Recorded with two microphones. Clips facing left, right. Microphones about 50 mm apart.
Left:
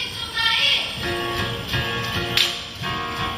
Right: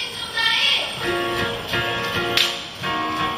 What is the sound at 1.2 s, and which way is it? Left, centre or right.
Music, centre.